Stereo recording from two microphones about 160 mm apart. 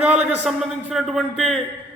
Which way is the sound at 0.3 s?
5° right (ahead or behind).